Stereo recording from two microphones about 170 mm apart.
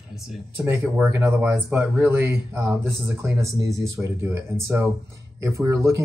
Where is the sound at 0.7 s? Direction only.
10° right (ahead or behind).